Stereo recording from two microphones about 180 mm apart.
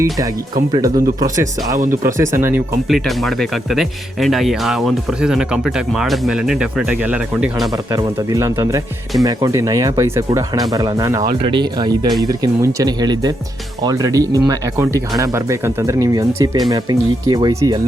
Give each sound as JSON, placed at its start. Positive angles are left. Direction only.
{"t": 0.7, "sound": "speech", "side_deg": -20}
{"t": 2.9, "sound": "speech", "side_deg": 0}
{"t": 7.7, "sound": "speech", "side_deg": -20}